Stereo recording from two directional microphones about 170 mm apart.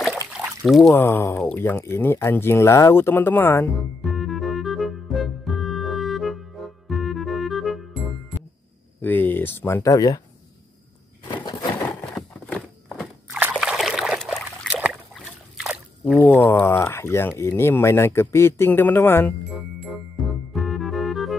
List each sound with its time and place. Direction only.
0.7 s speech: centre (ahead or behind)
0.9 s speech: 15° left (ahead or behind)
4.0 s music: centre (ahead or behind)
9.0 s speech: 10° left (ahead or behind)
11.4 s a sound: 20° left (ahead or behind)
12.1 s a sound: 5° left (ahead or behind)
16.3 s speech: 10° left (ahead or behind)
20.5 s organ: centre (ahead or behind)